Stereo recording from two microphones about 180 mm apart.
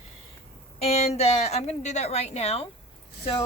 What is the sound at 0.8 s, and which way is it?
A woman's voice, 35° left (ahead or behind).